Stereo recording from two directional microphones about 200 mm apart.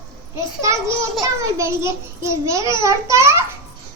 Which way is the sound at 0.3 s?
15° right (ahead or behind).